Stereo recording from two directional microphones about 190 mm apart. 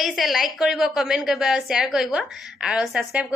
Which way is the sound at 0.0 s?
Centre (ahead or behind).